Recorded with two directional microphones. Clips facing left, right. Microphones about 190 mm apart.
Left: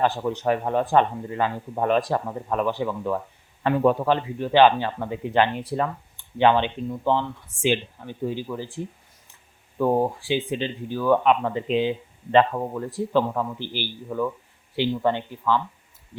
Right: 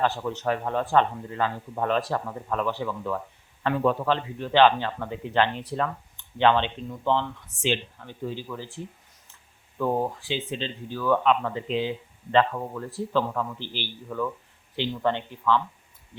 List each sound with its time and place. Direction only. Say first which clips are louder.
0.0 s speech: left 3 dB; 15° left (ahead or behind)